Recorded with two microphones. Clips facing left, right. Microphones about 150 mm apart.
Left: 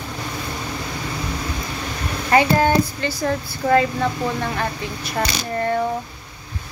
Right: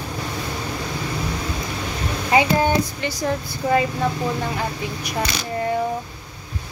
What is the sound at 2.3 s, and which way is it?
Speech, 15° right (ahead or behind).